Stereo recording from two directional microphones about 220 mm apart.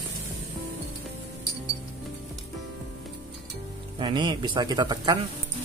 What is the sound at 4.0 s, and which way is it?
Speech, 20° right (ahead or behind).